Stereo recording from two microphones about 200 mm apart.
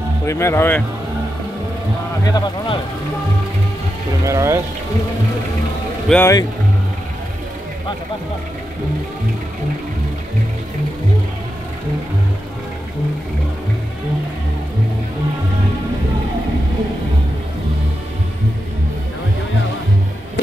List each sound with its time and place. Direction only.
0.3 s speech: 15° left (ahead or behind)
2.2 s speech: 20° left (ahead or behind)
4.3 s speech: 15° right (ahead or behind)
6.0 s speech: 5° left (ahead or behind)